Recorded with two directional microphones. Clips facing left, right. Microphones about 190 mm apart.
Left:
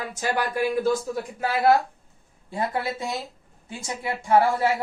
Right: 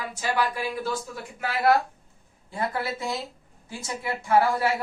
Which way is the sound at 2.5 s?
20° left (ahead or behind).